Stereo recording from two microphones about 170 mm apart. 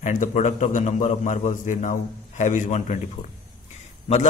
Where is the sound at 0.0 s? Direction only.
45° left (ahead or behind).